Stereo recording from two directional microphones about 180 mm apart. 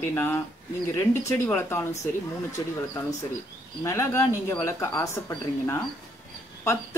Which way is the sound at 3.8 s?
15° left (ahead or behind).